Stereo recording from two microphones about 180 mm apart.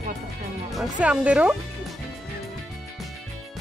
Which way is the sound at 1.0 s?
5° right (ahead or behind).